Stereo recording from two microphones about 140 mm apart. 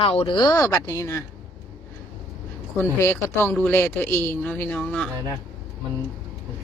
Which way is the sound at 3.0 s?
15° left (ahead or behind).